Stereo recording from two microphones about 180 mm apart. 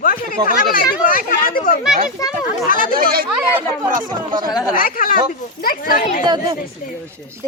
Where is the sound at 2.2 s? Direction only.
20° left (ahead or behind).